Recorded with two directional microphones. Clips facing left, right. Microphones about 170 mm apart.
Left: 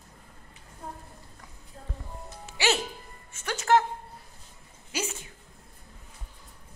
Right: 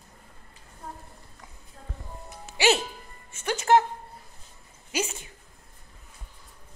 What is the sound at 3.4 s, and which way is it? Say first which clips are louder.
Music: right 2 dB; 20° right (ahead or behind).